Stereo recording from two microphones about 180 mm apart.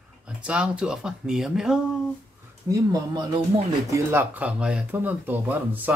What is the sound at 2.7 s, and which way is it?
Speech, 20° right (ahead or behind).